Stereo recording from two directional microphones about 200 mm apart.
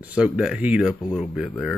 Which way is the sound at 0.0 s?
5° right (ahead or behind).